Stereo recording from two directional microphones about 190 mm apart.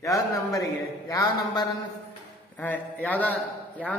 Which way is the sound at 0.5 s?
20° left (ahead or behind).